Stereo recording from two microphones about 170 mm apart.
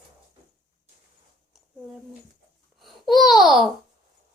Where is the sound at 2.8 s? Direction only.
Centre (ahead or behind).